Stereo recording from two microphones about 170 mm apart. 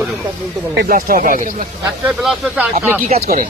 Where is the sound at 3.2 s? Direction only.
55° right (ahead or behind).